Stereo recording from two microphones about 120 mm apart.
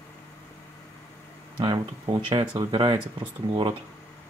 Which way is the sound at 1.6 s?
30° right (ahead or behind).